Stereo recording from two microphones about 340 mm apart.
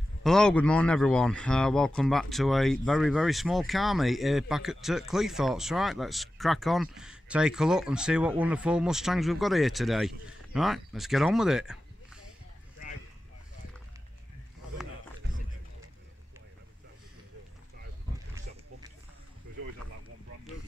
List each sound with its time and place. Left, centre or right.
0.2 s speech: centre